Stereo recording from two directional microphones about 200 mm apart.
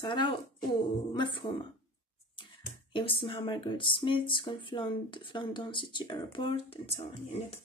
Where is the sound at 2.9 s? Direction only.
25° left (ahead or behind).